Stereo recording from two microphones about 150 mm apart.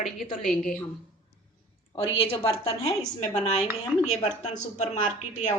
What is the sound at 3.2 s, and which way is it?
Speech, 50° left (ahead or behind).